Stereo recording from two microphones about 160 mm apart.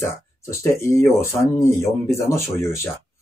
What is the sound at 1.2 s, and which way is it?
Speech, 15° left (ahead or behind).